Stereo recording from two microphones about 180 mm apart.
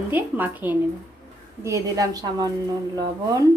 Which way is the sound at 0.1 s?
10° right (ahead or behind).